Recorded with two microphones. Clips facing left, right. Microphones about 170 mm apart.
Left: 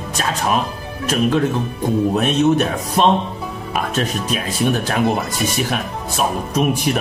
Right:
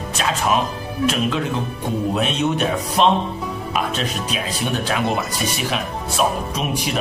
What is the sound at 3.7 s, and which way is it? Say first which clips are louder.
Speech: left 3 dB; 50° left (ahead or behind).